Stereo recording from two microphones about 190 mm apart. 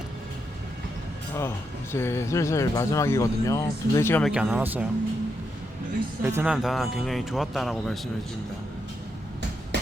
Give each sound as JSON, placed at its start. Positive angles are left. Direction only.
{"t": 1.4, "sound": "speech", "side_deg": 15}
{"t": 4.3, "sound": "speech", "side_deg": -5}
{"t": 6.2, "sound": "speech", "side_deg": -10}